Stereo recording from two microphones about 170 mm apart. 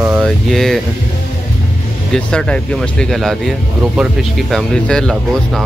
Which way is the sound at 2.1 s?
5° left (ahead or behind).